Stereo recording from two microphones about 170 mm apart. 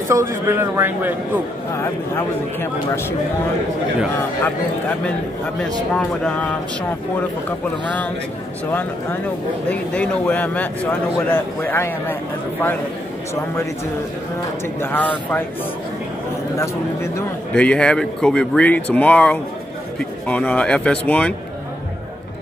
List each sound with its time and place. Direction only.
0.1 s a man's voice: 15° right (ahead or behind)
1.8 s a man's voice: 15° left (ahead or behind)
7.8 s a man's voice: 10° left (ahead or behind)
9.7 s a man's voice: 10° left (ahead or behind)
14.8 s a man's voice: 10° left (ahead or behind)
16.5 s a man's voice: 15° left (ahead or behind)
17.6 s a man's voice: 5° left (ahead or behind)